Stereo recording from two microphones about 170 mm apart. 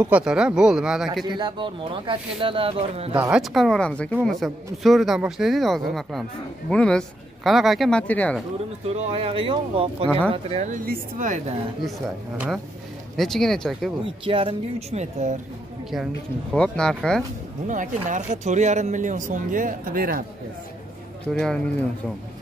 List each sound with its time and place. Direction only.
0.0 s speech: 5° right (ahead or behind)
1.2 s speech: 25° right (ahead or behind)
3.2 s speech: 5° right (ahead or behind)
8.8 s speech: 35° right (ahead or behind)
10.7 s speech: 50° right (ahead or behind)
13.1 s speech: centre (ahead or behind)
14.2 s speech: 30° right (ahead or behind)
16.5 s speech: 5° left (ahead or behind)
17.6 s speech: 50° right (ahead or behind)
21.3 s speech: 5° left (ahead or behind)